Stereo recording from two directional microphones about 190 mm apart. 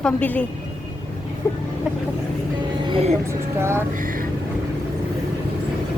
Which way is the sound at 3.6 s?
15° right (ahead or behind).